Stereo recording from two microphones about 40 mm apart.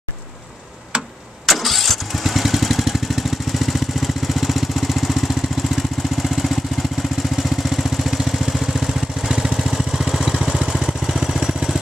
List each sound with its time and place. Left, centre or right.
1.4 s vehicle: centre
5.3 s vehicle: centre
6.2 s vehicle: centre